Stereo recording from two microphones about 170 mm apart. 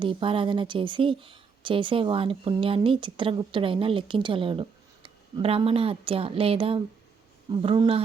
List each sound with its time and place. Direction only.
0.0 s speech: 30° right (ahead or behind)